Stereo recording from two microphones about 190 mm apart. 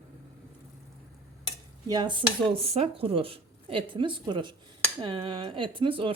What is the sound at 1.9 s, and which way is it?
Speech, 25° right (ahead or behind).